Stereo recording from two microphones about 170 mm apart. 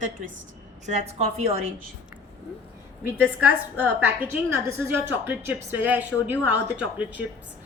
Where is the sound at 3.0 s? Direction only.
10° right (ahead or behind).